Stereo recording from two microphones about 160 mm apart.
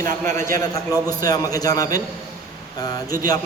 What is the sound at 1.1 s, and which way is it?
Speech, 25° left (ahead or behind).